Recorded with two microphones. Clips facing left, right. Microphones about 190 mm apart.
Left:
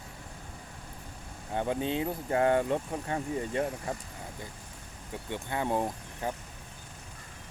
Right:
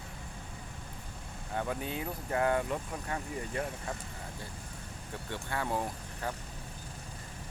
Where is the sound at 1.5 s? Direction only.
25° left (ahead or behind).